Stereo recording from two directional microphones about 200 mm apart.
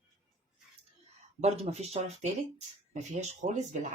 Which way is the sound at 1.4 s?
30° right (ahead or behind).